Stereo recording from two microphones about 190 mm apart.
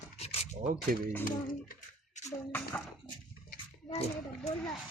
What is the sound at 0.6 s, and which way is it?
Speech, 45° right (ahead or behind).